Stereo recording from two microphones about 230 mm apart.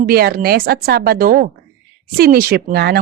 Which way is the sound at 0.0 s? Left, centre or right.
Right.